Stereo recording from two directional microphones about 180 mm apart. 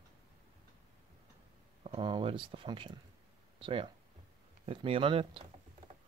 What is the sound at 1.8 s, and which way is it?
Speech, 30° right (ahead or behind).